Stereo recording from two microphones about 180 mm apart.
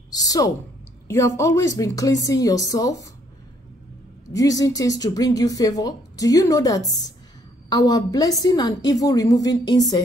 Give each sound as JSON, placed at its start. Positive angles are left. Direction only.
{"t": 0.1, "sound": "a woman's voice", "side_deg": 20}
{"t": 4.3, "sound": "speech", "side_deg": 20}